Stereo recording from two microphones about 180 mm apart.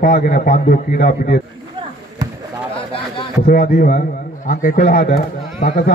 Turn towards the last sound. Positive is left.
turn(degrees=50)  # may be behind; listen again after turning